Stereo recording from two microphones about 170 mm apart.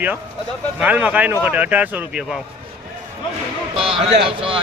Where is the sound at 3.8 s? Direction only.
35° right (ahead or behind).